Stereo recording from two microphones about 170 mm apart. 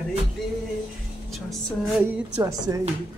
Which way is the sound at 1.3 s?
Centre (ahead or behind).